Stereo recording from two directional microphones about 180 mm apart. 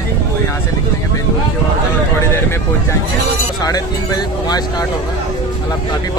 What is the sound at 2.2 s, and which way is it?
Speech, 15° left (ahead or behind).